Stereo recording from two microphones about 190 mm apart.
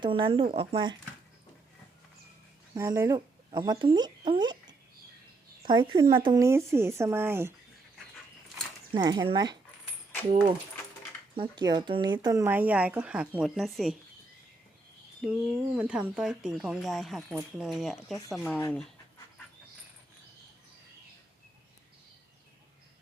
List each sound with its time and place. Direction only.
0.0 s speech: 25° right (ahead or behind)
2.7 s speech: 15° right (ahead or behind)
8.9 s speech: 20° right (ahead or behind)
11.3 s speech: 20° right (ahead or behind); by 13.9 s centre (ahead or behind)
15.2 s speech: 5° right (ahead or behind)